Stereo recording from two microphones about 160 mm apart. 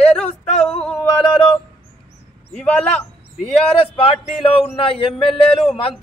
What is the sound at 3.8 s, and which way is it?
Speech, 35° left (ahead or behind).